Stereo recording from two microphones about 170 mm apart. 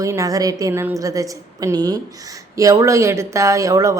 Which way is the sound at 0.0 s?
20° right (ahead or behind).